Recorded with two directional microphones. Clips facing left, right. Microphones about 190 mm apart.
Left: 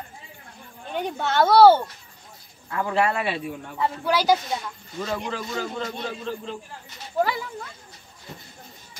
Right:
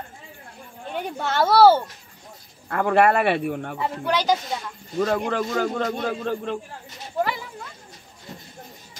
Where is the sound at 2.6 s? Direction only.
60° right (ahead or behind).